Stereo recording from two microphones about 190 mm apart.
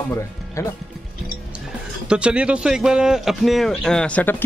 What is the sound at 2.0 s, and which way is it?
A man's voice, 5° right (ahead or behind).